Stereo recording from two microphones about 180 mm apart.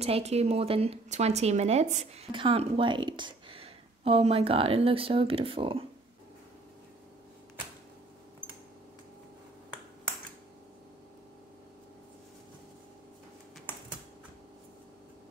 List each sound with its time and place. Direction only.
0.0 s speech: 35° right (ahead or behind)